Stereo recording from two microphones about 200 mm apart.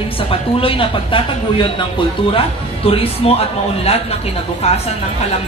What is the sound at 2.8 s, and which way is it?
A woman's voice, 30° left (ahead or behind).